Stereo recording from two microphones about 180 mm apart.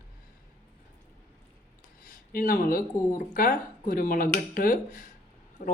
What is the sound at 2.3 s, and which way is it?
Speech, 50° left (ahead or behind).